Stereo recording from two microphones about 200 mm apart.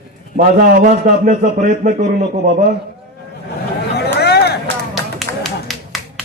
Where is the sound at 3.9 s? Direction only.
55° left (ahead or behind).